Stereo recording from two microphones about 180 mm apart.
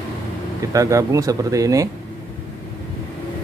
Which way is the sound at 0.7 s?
20° right (ahead or behind).